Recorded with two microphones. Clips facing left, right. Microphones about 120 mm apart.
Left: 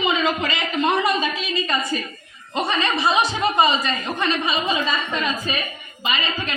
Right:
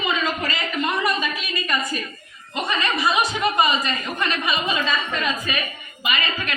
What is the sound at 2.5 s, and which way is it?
Chuckle, 30° left (ahead or behind).